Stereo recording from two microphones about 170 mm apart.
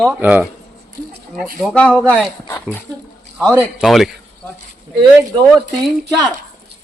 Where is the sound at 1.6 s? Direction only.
5° left (ahead or behind).